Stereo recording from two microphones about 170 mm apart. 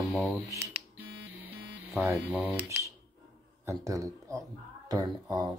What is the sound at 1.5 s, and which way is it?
Music, centre (ahead or behind).